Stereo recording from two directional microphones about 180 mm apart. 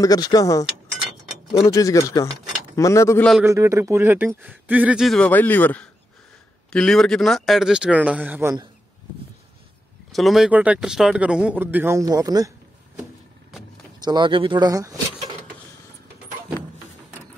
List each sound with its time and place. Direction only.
0.0 s speech: 20° left (ahead or behind)
3.4 s speech: 15° right (ahead or behind)
10.1 s speech: centre (ahead or behind); by 12.5 s 20° right (ahead or behind)
14.0 s speech: 25° right (ahead or behind)